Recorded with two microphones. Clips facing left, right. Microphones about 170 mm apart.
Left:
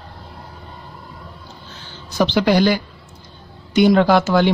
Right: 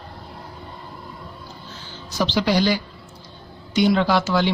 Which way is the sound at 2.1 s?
55° left (ahead or behind).